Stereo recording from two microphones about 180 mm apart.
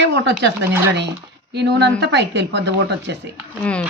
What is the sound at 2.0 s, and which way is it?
Speech, 70° right (ahead or behind).